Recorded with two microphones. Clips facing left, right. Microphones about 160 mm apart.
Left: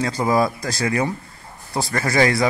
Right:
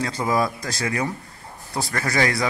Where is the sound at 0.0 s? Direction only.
35° left (ahead or behind).